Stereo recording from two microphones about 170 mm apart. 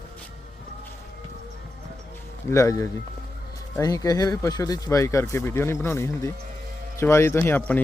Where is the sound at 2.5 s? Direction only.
20° left (ahead or behind).